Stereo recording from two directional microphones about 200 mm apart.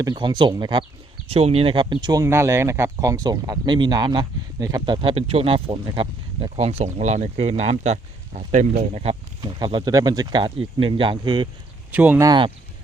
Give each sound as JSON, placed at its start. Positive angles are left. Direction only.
{"t": 0.0, "sound": "speech", "side_deg": -20}
{"t": 11.9, "sound": "speech", "side_deg": -10}